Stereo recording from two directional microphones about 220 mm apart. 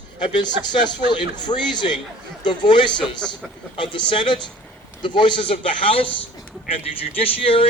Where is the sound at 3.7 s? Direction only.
20° left (ahead or behind).